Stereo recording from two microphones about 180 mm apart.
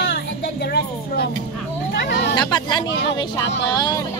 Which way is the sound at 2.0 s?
70° left (ahead or behind).